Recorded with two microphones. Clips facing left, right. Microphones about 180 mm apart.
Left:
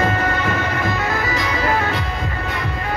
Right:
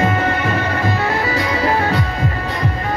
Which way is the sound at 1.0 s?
30° right (ahead or behind).